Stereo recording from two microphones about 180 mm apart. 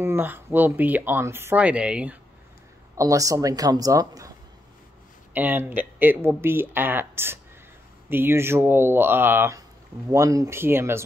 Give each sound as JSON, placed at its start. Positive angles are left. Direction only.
{"t": 0.0, "sound": "speech", "side_deg": -10}
{"t": 3.0, "sound": "speech", "side_deg": -20}
{"t": 5.3, "sound": "speech", "side_deg": -10}